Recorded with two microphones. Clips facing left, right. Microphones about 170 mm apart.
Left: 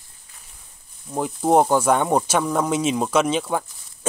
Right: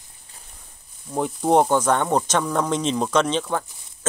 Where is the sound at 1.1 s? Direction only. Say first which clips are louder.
Left 1 dB; centre (ahead or behind).